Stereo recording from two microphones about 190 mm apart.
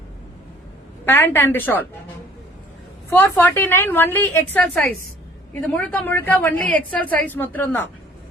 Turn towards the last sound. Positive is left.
turn(degrees=10)  # may be behind; listen again after turning